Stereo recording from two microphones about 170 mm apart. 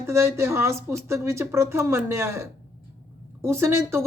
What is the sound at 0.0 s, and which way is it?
Speech, 15° right (ahead or behind).